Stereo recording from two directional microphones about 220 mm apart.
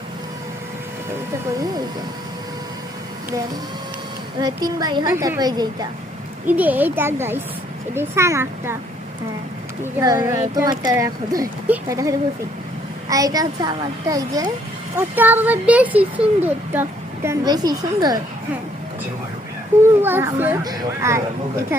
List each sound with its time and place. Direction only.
4.4 s speech: 20° right (ahead or behind)
6.5 s speech: 5° right (ahead or behind)
9.8 s speech: 15° right (ahead or behind)
19.8 s speech: 10° right (ahead or behind)